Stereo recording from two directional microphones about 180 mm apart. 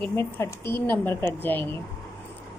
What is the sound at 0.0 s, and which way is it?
A woman's voice, 10° left (ahead or behind).